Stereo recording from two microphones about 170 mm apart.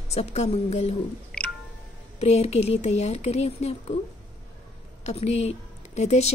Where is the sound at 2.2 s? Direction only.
40° left (ahead or behind).